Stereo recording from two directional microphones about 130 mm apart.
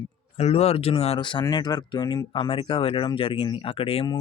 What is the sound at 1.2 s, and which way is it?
Speech, 35° left (ahead or behind).